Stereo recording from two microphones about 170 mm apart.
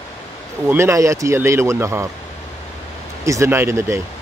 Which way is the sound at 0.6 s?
15° right (ahead or behind).